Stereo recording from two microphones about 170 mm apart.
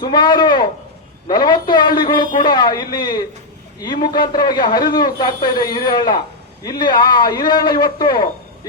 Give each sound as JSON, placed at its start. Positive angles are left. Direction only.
{"t": 0.0, "sound": "a man's voice", "side_deg": 25}